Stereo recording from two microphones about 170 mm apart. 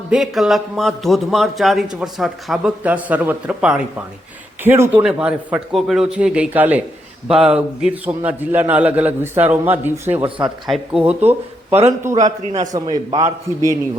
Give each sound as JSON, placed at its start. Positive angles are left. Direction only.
{"t": 0.1, "sound": "a man's voice", "side_deg": 0}
{"t": 10.2, "sound": "a man's voice", "side_deg": -30}
{"t": 10.4, "sound": "a man's voice", "side_deg": -5}
{"t": 12.1, "sound": "a man's voice", "side_deg": -40}
{"t": 12.5, "sound": "a man's voice", "side_deg": -25}